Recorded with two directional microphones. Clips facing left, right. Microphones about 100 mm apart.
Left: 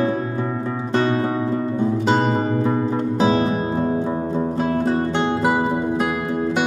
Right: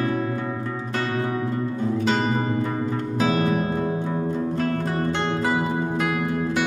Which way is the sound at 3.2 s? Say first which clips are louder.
Left 2 dB; 25° left (ahead or behind).